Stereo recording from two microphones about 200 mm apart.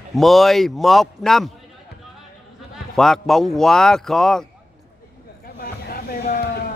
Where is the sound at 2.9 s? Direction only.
Centre (ahead or behind).